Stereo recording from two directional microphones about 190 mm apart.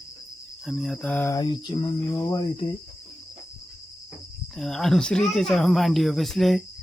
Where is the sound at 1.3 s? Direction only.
25° left (ahead or behind).